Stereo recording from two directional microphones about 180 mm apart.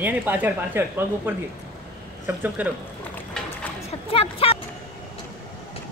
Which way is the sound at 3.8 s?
30° left (ahead or behind).